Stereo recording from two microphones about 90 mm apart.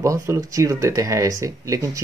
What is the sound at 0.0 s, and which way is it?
Speech, 35° right (ahead or behind).